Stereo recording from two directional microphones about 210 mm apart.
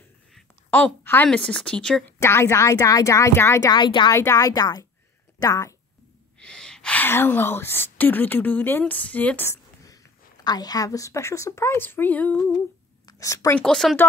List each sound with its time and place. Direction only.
0.3 s a woman's voice: 5° left (ahead or behind)
6.4 s a woman's voice: 5° left (ahead or behind)